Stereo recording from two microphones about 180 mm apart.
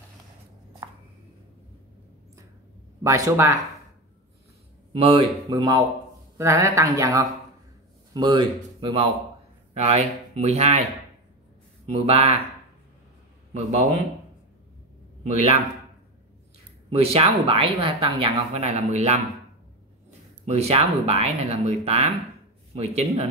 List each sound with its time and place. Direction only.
0.8 s a sound: 25° right (ahead or behind)
3.0 s speech: 15° right (ahead or behind)
4.9 s speech: 30° right (ahead or behind)
5.5 s speech: 20° right (ahead or behind)
9.8 s speech: 35° right (ahead or behind)
11.8 s speech: 35° right (ahead or behind)
13.5 s speech: 35° right (ahead or behind)
16.9 s speech: 35° right (ahead or behind)
20.4 s speech: 35° right (ahead or behind)